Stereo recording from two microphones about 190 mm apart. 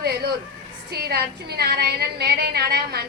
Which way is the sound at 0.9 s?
55° right (ahead or behind).